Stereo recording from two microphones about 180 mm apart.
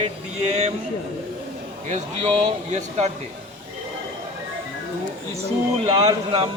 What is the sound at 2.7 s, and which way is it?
Speech, 40° right (ahead or behind).